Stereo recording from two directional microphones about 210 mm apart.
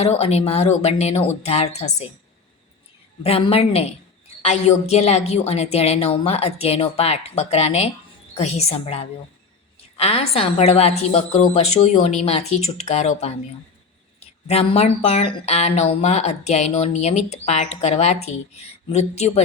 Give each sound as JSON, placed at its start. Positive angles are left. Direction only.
{"t": 0.0, "sound": "a woman's voice", "side_deg": 30}
{"t": 3.2, "sound": "a woman's voice", "side_deg": 30}